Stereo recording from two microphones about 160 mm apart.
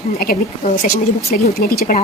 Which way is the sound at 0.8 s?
70° left (ahead or behind).